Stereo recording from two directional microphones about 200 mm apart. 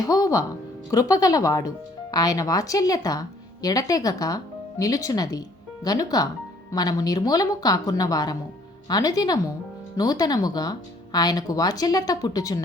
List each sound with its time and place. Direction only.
0.0 s speech: 15° left (ahead or behind)